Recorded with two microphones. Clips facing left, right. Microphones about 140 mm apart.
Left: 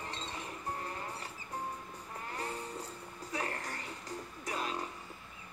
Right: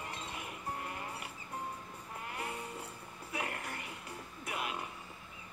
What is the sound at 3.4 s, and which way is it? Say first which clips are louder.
Music: even; 35° left (ahead or behind).